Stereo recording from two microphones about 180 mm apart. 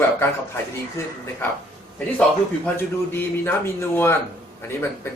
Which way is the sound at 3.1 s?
10° left (ahead or behind).